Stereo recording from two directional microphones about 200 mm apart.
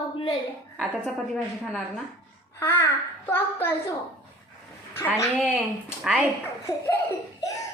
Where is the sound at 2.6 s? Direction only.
10° left (ahead or behind).